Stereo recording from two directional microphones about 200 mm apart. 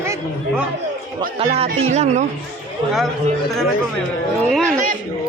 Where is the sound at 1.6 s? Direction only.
30° right (ahead or behind).